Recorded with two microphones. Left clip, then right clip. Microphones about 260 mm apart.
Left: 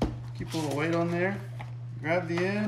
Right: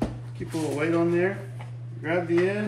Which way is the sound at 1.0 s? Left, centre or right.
Left.